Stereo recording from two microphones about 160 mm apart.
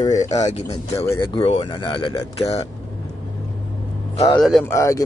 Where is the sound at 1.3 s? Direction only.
30° left (ahead or behind).